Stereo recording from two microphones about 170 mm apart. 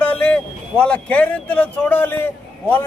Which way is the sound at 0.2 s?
5° left (ahead or behind).